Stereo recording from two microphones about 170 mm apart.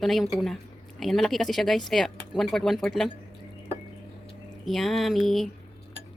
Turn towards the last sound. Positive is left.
turn(degrees=0)  # may be behind; listen again after turning